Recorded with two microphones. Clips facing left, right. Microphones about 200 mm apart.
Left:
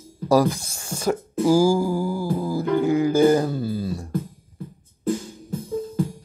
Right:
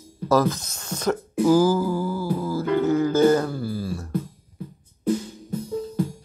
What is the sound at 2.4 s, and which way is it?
Music, 15° left (ahead or behind).